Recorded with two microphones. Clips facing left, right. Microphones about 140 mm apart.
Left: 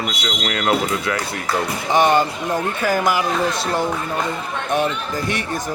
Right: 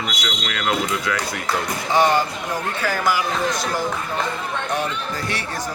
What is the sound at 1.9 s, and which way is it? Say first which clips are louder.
Speech: left 2 dB; 20° left (ahead or behind).